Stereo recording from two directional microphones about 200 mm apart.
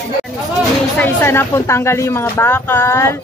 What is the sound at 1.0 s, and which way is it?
Speech, 10° left (ahead or behind).